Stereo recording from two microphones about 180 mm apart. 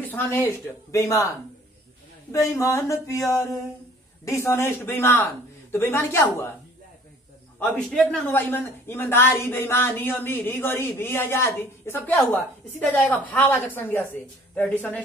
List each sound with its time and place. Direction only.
0.0 s speech: 10° left (ahead or behind)
2.3 s speech: 20° left (ahead or behind)
7.6 s a man's voice: centre (ahead or behind)